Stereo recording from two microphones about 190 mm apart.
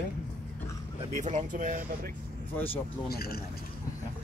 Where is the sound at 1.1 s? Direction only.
40° right (ahead or behind).